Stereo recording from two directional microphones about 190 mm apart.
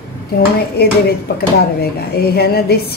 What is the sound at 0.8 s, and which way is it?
Speech, 60° left (ahead or behind).